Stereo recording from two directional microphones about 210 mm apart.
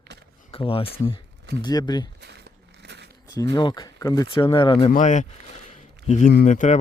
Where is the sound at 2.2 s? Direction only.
55° right (ahead or behind).